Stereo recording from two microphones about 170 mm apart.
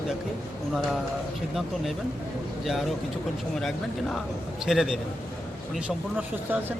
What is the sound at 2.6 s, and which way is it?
Speech, centre (ahead or behind).